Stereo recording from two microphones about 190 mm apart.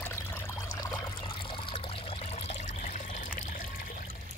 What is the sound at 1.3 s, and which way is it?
Water, 30° left (ahead or behind).